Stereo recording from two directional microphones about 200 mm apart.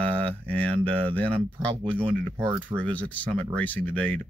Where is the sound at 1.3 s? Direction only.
30° right (ahead or behind).